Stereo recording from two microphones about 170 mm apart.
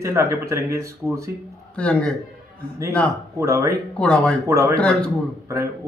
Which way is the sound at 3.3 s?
15° right (ahead or behind).